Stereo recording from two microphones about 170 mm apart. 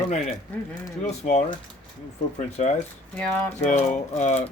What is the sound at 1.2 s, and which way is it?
Speech, 45° left (ahead or behind).